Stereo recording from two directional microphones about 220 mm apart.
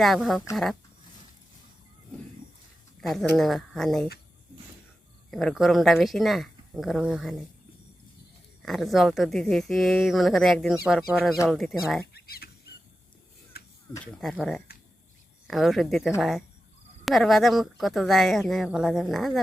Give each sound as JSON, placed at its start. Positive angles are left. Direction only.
{"t": 0.0, "sound": "speech", "side_deg": 0}
{"t": 3.1, "sound": "speech", "side_deg": 0}
{"t": 5.3, "sound": "speech", "side_deg": 0}
{"t": 8.6, "sound": "speech", "side_deg": 0}
{"t": 12.1, "sound": "fowl", "side_deg": 45}
{"t": 13.9, "sound": "speech", "side_deg": 5}